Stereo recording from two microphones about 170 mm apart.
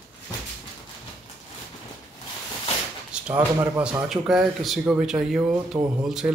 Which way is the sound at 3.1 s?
5° right (ahead or behind).